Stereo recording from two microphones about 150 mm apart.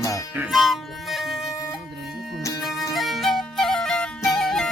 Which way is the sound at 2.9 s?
Centre (ahead or behind).